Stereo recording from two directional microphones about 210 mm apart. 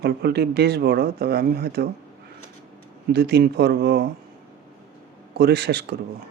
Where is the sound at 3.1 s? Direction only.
50° right (ahead or behind).